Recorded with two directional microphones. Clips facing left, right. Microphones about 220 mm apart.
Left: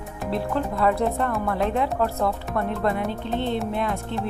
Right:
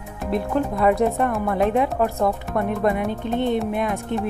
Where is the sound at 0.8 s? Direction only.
15° right (ahead or behind).